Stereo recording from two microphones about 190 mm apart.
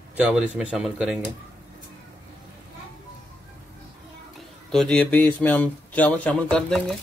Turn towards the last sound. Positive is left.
turn(degrees=5)  # may be behind; listen again after turning